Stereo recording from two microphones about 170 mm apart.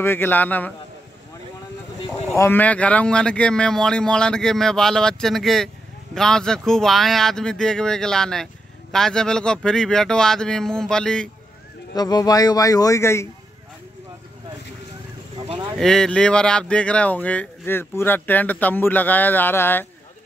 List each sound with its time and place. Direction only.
0.0 s speech: 15° left (ahead or behind)
2.3 s speech: 15° left (ahead or behind)
11.9 s a man's voice: 25° left (ahead or behind)
15.3 s a sound: 30° right (ahead or behind)
15.8 s speech: 5° left (ahead or behind)